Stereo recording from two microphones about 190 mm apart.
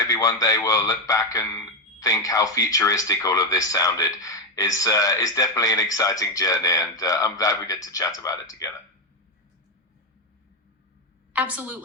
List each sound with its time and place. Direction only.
0.0 s speech: 15° left (ahead or behind)
11.3 s a woman's voice: 5° right (ahead or behind)